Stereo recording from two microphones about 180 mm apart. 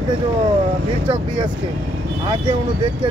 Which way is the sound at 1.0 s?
25° right (ahead or behind).